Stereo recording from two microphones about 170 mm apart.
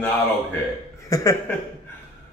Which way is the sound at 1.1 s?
20° left (ahead or behind).